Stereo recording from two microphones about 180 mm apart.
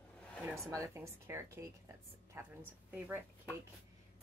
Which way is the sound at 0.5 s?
15° right (ahead or behind).